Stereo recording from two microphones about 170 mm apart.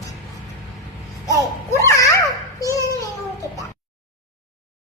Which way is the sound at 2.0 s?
20° left (ahead or behind).